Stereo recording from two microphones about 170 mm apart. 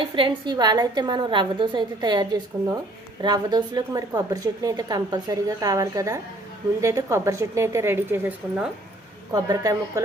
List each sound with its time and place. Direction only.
0.2 s a woman's voice: 25° right (ahead or behind); by 8.7 s 10° right (ahead or behind)
9.3 s a woman's voice: 20° right (ahead or behind)